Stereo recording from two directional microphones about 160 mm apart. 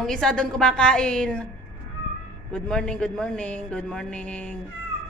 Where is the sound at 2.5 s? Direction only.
5° left (ahead or behind).